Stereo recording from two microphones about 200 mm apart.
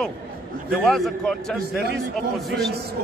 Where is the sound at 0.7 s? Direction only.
Centre (ahead or behind).